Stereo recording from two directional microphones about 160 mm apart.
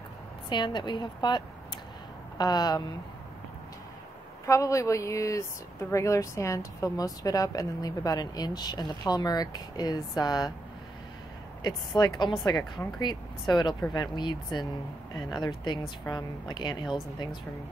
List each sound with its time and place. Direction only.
0.5 s speech: 30° left (ahead or behind)
4.5 s speech: 20° left (ahead or behind)
11.6 s speech: 25° left (ahead or behind)